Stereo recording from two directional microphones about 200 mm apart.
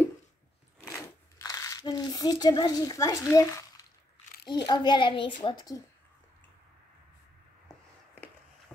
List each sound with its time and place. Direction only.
0.9 s crumpling: 15° left (ahead or behind)
4.5 s a child's voice: 20° left (ahead or behind)